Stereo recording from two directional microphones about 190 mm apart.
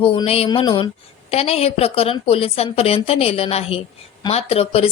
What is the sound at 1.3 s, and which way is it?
A woman's voice, 30° left (ahead or behind).